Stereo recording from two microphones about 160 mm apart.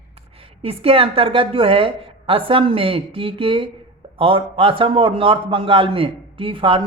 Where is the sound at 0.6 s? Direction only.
35° right (ahead or behind).